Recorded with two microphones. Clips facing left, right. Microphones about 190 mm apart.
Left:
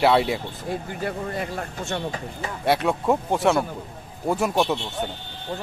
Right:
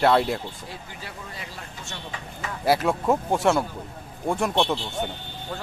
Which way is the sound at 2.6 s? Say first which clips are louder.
Even; centre (ahead or behind).